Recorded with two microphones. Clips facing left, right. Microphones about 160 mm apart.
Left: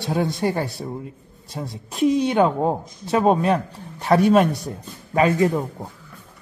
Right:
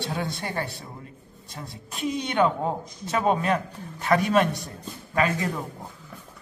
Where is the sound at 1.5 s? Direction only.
35° left (ahead or behind).